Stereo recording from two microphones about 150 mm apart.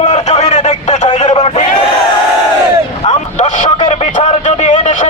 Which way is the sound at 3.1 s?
55° left (ahead or behind).